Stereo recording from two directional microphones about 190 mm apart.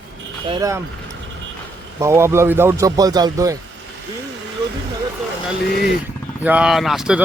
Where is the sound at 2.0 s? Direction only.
15° right (ahead or behind).